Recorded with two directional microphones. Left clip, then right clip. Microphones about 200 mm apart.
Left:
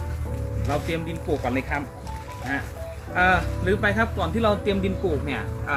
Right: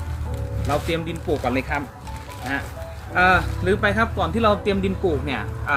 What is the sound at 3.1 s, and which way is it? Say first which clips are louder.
Speech: right 3 dB; 15° right (ahead or behind).